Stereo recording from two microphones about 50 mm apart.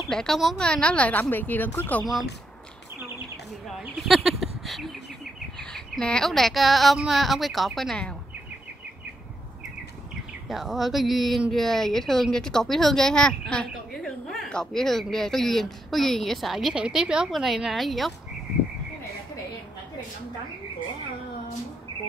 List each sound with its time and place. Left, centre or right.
0.1 s a woman's voice: centre; by 1.2 s left
1.3 s speech: left
3.9 s speech: centre
5.6 s bird: centre
6.2 s speech: centre
10.5 s speech: centre
16.7 s a woman's voice: centre
17.3 s speech: centre